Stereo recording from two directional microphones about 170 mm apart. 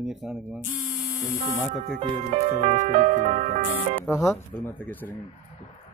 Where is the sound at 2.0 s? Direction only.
45° right (ahead or behind).